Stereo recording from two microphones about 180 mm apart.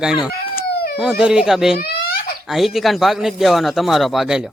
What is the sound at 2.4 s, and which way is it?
A man's voice, centre (ahead or behind).